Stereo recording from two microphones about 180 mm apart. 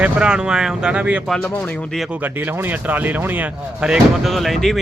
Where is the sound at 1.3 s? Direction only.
10° left (ahead or behind).